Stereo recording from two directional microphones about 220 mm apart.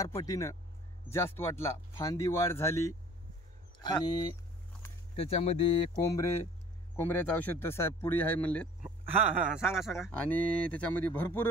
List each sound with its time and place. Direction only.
0.0 s speech: 15° left (ahead or behind)
7.0 s speech: 10° left (ahead or behind)
8.8 s a man's voice: 10° right (ahead or behind); by 11.4 s 5° left (ahead or behind)